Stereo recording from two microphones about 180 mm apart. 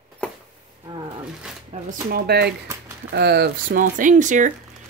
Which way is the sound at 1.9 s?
55° right (ahead or behind).